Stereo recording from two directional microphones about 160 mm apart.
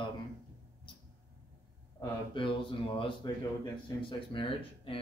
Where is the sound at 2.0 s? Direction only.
30° left (ahead or behind).